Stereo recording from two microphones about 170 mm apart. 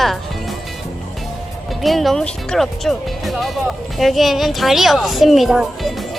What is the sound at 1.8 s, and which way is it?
Speech, centre (ahead or behind).